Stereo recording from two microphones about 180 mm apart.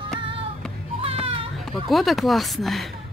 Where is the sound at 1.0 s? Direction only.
30° right (ahead or behind).